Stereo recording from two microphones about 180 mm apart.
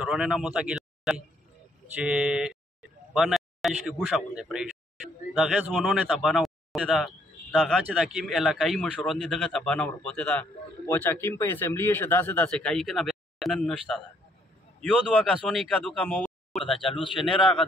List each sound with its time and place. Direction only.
0.0 s speech: 5° right (ahead or behind)
16.6 s a man's voice: 30° left (ahead or behind)